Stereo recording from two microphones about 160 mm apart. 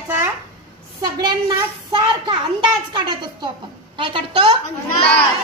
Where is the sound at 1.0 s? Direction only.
25° right (ahead or behind).